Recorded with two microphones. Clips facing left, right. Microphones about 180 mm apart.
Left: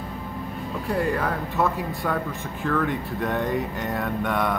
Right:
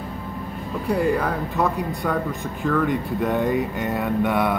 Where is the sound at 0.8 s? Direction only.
Centre (ahead or behind).